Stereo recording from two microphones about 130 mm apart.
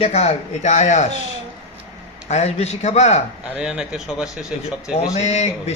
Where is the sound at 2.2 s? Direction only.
60° left (ahead or behind).